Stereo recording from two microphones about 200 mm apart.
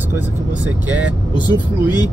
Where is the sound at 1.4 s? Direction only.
20° left (ahead or behind).